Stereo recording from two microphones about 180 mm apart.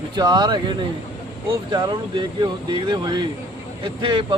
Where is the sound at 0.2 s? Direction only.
25° right (ahead or behind).